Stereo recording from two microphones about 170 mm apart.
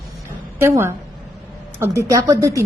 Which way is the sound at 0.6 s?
15° right (ahead or behind).